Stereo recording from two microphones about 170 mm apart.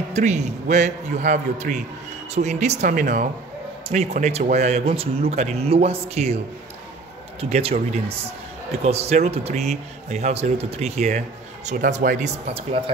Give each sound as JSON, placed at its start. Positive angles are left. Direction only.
{"t": 0.1, "sound": "a man's voice", "side_deg": -45}
{"t": 3.9, "sound": "a man's voice", "side_deg": -40}
{"t": 12.4, "sound": "a man's voice", "side_deg": -35}